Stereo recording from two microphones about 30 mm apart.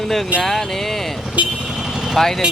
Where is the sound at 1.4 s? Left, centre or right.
Right.